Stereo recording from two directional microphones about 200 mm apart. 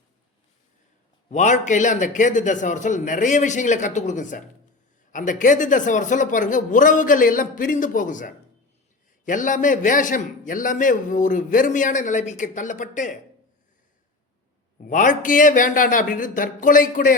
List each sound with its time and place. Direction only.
1.3 s a man's voice: 35° left (ahead or behind)
14.8 s a man's voice: 40° left (ahead or behind)